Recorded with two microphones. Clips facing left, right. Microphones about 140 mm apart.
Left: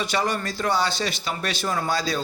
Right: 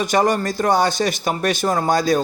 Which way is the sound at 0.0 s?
45° right (ahead or behind).